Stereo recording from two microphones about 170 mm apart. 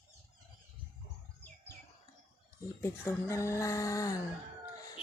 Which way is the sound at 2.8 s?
15° left (ahead or behind).